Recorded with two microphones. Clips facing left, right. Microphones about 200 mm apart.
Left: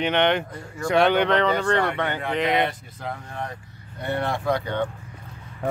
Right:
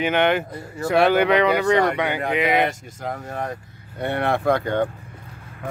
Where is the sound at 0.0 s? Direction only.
5° right (ahead or behind).